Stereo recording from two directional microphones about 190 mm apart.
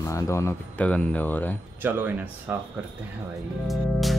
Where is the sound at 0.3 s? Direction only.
15° left (ahead or behind).